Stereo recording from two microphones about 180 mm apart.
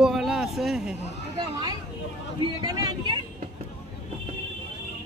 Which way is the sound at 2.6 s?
20° right (ahead or behind).